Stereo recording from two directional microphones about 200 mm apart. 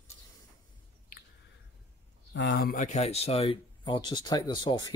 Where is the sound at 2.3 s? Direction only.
55° left (ahead or behind).